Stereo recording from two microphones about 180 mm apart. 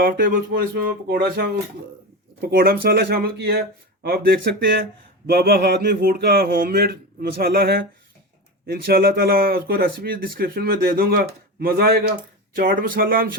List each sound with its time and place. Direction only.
0.0 s speech: 50° right (ahead or behind)